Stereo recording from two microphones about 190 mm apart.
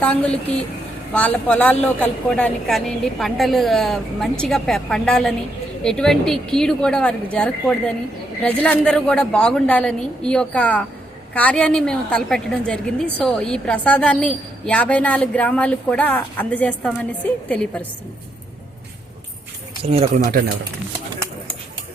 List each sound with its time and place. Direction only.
0.0 s a woman's voice: 5° left (ahead or behind)
19.8 s speech: 30° right (ahead or behind)